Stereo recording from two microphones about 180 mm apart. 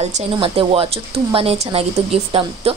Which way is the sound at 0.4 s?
30° right (ahead or behind).